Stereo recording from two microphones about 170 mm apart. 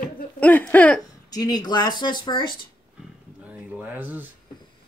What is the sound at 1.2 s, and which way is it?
Speech, 20° left (ahead or behind).